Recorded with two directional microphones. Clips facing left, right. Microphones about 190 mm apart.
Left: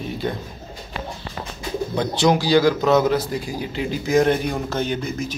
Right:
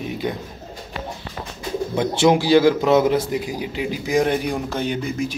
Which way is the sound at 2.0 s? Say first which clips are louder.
Right 2 dB; 25° right (ahead or behind).